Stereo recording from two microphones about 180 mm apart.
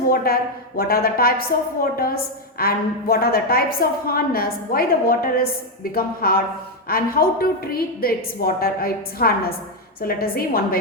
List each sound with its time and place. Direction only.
0.8 s a woman's voice: 55° left (ahead or behind)